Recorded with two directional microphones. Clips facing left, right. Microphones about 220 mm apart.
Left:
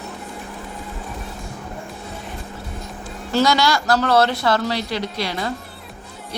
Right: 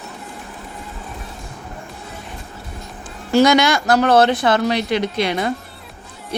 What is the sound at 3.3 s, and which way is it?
A woman's voice, 15° right (ahead or behind).